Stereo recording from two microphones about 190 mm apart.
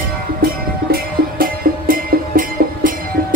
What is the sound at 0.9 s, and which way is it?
Music, 50° right (ahead or behind).